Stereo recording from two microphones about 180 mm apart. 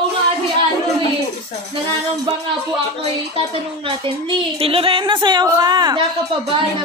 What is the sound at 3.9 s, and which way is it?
A woman's voice, 30° right (ahead or behind).